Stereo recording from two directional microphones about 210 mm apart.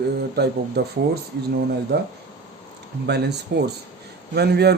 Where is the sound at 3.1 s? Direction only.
50° right (ahead or behind).